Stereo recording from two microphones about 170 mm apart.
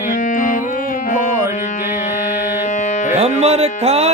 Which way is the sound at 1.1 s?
50° left (ahead or behind).